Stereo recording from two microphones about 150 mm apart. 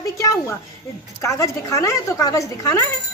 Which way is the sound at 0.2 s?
20° left (ahead or behind).